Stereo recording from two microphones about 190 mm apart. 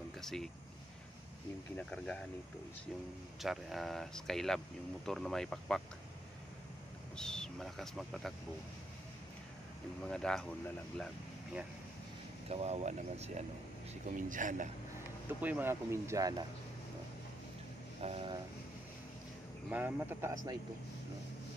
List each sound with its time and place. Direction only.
0.2 s speech: centre (ahead or behind)
1.8 s speech: 5° left (ahead or behind)
3.4 s speech: centre (ahead or behind)
7.2 s speech: 5° left (ahead or behind)
10.0 s speech: 5° left (ahead or behind)
12.4 s speech: 35° right (ahead or behind)
15.2 s speech: 10° right (ahead or behind)
18.0 s vehicle: 30° right (ahead or behind)
19.7 s speech: 10° right (ahead or behind)